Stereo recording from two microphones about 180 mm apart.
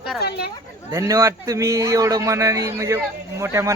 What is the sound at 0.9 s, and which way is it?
A man's voice, 15° right (ahead or behind).